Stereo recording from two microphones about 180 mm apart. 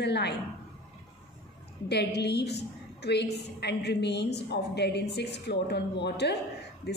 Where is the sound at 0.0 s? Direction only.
70° left (ahead or behind).